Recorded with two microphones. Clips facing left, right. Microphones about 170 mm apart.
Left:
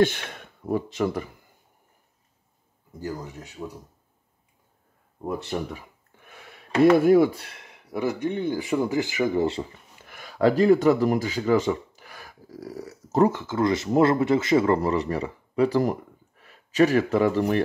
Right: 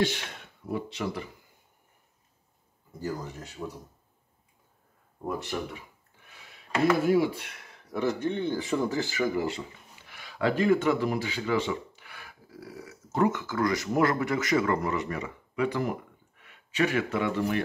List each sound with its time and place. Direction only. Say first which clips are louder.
0.7 s speech: left 7 dB; 45° left (ahead or behind)
3.1 s speech: left 1 dB; 10° left (ahead or behind)
5.2 s speech: left 3 dB; 25° left (ahead or behind)
6.2 s a sound: left 7 dB; 55° left (ahead or behind)
7.1 s speech: left 6 dB; 45° left (ahead or behind)
7.6 s speech: left 2 dB; 15° left (ahead or behind); by 9.7 s 30° left (ahead or behind)
10.0 s speech: left 7 dB; 45° left (ahead or behind)